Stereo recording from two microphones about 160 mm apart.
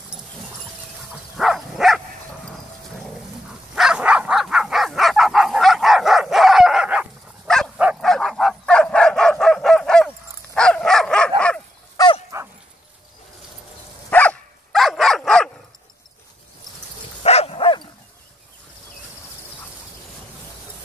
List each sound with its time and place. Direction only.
1.3 s dog: centre (ahead or behind)
3.7 s dog: 5° right (ahead or behind)
7.4 s livestock: 5° left (ahead or behind)
8.0 s dog: centre (ahead or behind)
12.3 s dog: 20° right (ahead or behind)
14.1 s dog: 5° left (ahead or behind)
17.2 s dog: 40° left (ahead or behind)